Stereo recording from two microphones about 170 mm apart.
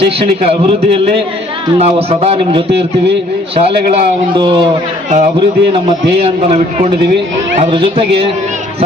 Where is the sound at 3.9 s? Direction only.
30° right (ahead or behind).